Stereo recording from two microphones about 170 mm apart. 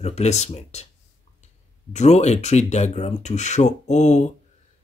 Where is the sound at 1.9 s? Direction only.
40° left (ahead or behind).